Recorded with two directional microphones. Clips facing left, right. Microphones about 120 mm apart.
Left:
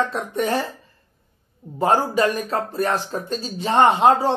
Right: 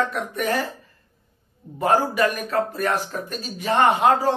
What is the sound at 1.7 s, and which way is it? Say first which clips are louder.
Speech: left 1 dB; 30° left (ahead or behind).